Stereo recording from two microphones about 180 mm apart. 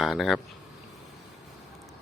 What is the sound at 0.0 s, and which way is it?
Speech, centre (ahead or behind).